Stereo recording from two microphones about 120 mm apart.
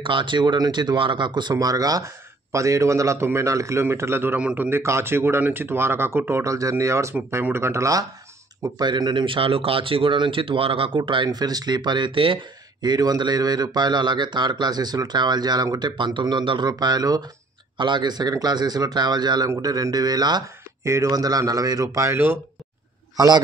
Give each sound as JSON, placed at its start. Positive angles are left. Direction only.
{"t": 0.0, "sound": "speech", "side_deg": -40}
{"t": 12.8, "sound": "a man's voice", "side_deg": -35}
{"t": 23.1, "sound": "a man's voice", "side_deg": -35}